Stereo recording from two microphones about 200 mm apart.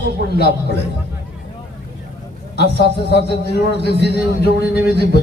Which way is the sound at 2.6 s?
55° left (ahead or behind).